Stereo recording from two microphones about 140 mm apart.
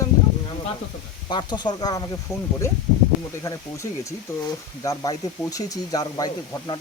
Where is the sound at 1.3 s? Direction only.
30° left (ahead or behind).